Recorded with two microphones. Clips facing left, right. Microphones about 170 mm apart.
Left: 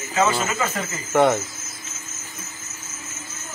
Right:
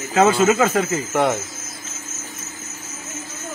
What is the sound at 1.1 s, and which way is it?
Speech, centre (ahead or behind).